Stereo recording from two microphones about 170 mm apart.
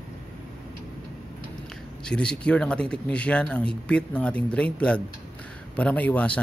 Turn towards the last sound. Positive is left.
turn(degrees=10)  # may be behind; listen again after turning